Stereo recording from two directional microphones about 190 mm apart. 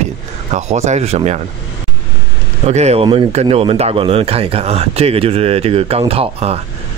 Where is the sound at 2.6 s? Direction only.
35° right (ahead or behind).